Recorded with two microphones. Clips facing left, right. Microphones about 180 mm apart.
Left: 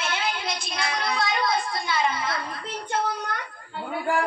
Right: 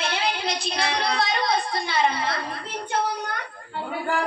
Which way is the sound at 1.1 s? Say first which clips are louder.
Left 1 dB; 65° right (ahead or behind).